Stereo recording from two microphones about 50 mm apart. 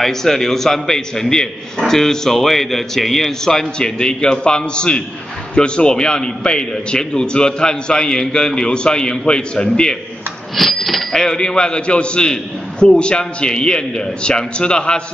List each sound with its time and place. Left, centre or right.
0.0 s speech: centre
10.5 s speech: centre